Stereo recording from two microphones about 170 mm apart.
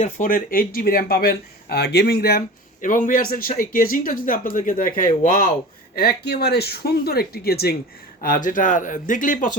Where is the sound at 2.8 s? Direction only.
50° left (ahead or behind); by 7.8 s 65° left (ahead or behind).